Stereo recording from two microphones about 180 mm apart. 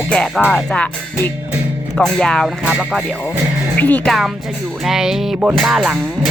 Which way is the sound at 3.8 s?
10° left (ahead or behind).